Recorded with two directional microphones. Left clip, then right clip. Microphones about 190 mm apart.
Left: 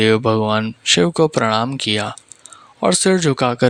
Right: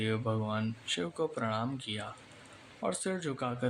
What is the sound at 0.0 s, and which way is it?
Speech, 50° left (ahead or behind).